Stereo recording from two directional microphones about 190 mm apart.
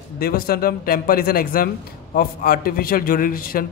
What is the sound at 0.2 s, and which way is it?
Speech, 50° left (ahead or behind).